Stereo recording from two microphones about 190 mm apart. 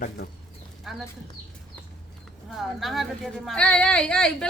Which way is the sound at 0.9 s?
Centre (ahead or behind).